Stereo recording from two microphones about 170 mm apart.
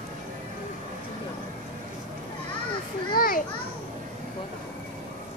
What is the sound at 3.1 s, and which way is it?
Children playing, 55° left (ahead or behind).